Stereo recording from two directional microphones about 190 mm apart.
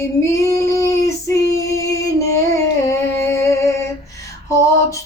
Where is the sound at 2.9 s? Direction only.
15° left (ahead or behind).